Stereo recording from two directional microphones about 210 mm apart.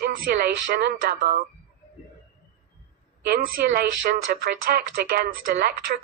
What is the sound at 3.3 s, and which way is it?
Speech, 45° right (ahead or behind).